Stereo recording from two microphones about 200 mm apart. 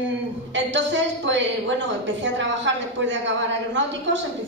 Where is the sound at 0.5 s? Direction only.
65° right (ahead or behind).